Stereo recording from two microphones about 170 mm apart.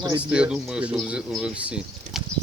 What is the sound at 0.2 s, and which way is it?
Speech, 5° right (ahead or behind).